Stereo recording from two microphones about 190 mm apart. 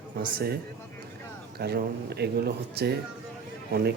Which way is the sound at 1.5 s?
55° right (ahead or behind).